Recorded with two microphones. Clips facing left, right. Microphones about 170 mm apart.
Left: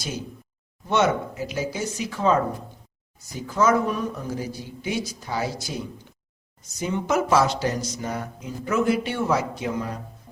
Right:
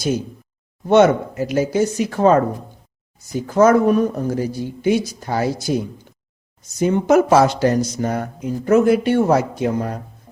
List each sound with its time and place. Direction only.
0.9 s speech: 55° right (ahead or behind)
3.4 s speech: 50° right (ahead or behind)